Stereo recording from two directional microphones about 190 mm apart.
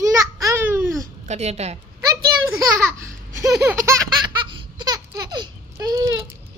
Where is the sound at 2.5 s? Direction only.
15° right (ahead or behind).